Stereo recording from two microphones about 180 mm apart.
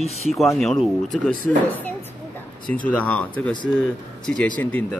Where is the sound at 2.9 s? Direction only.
5° left (ahead or behind).